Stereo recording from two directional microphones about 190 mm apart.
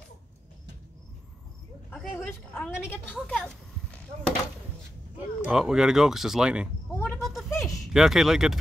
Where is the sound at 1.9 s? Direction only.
5° left (ahead or behind).